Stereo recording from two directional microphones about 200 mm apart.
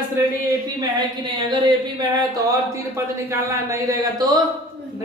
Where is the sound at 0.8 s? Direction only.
20° right (ahead or behind).